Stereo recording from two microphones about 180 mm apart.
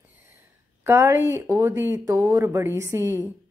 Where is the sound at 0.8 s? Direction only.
15° right (ahead or behind).